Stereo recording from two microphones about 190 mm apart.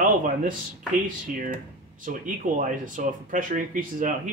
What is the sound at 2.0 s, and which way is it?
Speech, 45° right (ahead or behind).